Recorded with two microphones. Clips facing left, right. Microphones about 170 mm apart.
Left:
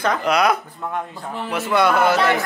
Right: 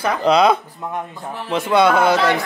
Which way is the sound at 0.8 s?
15° right (ahead or behind).